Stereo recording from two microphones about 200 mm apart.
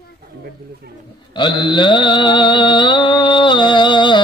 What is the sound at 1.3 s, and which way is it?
Mantra, 20° left (ahead or behind).